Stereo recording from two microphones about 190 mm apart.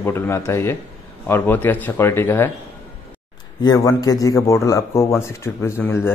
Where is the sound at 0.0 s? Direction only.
15° left (ahead or behind).